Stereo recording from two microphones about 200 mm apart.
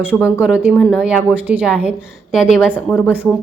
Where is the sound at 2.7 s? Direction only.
10° left (ahead or behind).